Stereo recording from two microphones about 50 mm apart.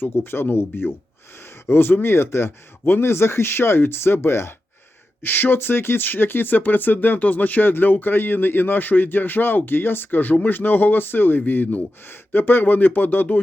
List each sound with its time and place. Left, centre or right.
0.0 s speech: left
5.2 s speech: left